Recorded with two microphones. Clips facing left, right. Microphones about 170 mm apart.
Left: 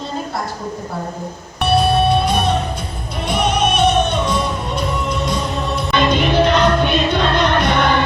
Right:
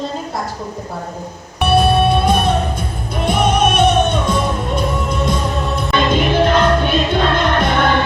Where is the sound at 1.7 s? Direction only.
50° right (ahead or behind).